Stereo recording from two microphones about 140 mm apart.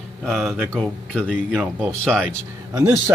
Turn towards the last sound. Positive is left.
turn(degrees=-20)  # may be behind; listen again after turning